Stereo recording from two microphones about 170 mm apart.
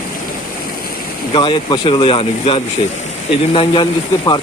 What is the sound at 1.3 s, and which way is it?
Speech, 30° left (ahead or behind).